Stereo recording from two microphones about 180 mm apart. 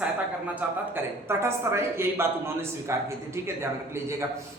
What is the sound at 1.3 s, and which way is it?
A man's voice, 15° right (ahead or behind).